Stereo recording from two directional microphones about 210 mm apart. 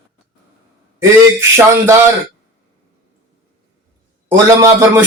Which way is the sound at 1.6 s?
10° right (ahead or behind).